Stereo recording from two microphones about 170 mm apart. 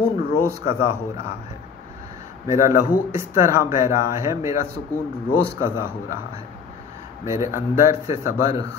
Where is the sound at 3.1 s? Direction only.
15° right (ahead or behind).